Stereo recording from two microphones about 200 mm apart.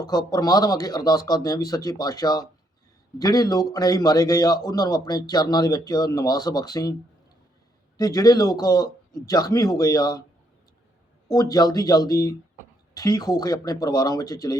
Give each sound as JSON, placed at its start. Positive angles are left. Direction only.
{"t": 0.0, "sound": "a man's voice", "side_deg": 20}
{"t": 7.9, "sound": "a man's voice", "side_deg": 20}
{"t": 11.3, "sound": "a man's voice", "side_deg": 20}